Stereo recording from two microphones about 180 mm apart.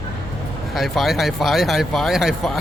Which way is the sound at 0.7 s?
Centre (ahead or behind).